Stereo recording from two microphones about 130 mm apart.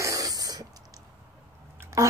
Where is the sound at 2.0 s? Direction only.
25° right (ahead or behind).